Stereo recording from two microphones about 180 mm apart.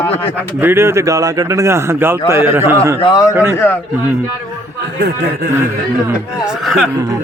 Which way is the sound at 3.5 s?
10° left (ahead or behind).